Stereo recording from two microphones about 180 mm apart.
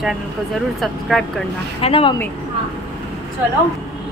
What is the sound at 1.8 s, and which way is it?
Speech, 30° left (ahead or behind).